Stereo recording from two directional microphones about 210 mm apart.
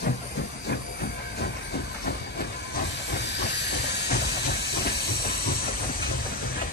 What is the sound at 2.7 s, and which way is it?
Hiss, 55° left (ahead or behind).